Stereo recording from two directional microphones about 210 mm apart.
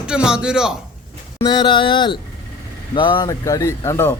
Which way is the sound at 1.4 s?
20° left (ahead or behind).